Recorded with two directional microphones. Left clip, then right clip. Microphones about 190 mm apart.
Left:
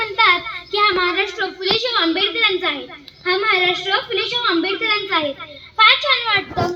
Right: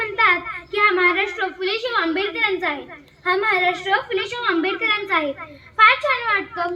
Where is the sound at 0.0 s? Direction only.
55° left (ahead or behind).